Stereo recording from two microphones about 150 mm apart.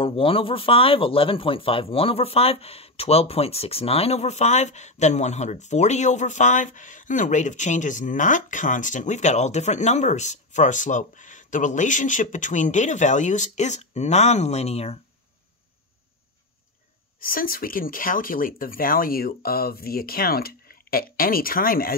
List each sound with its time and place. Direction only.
0.0 s speech: 35° left (ahead or behind)
17.2 s speech: 70° left (ahead or behind)